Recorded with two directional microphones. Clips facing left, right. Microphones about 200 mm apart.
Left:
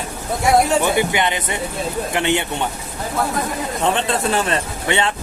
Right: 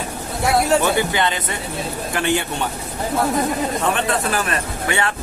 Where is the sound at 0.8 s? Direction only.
15° left (ahead or behind).